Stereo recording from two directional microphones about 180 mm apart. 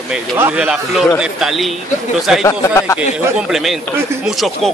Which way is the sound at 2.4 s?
20° left (ahead or behind).